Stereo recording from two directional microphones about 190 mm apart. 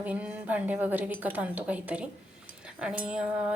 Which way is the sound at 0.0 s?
5° right (ahead or behind).